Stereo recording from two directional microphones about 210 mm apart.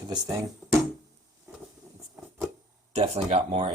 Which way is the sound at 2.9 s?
30° right (ahead or behind).